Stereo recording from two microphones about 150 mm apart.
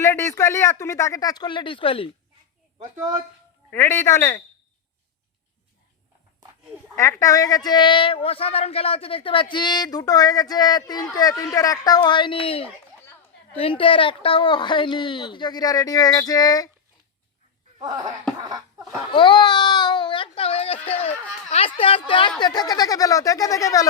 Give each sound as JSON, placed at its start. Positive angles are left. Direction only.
{"t": 0.0, "sound": "speech", "side_deg": 20}
{"t": 3.7, "sound": "a man's voice", "side_deg": 15}
{"t": 6.9, "sound": "a woman's voice", "side_deg": 20}
{"t": 17.7, "sound": "laughter", "side_deg": -25}
{"t": 19.1, "sound": "a woman's voice", "side_deg": 30}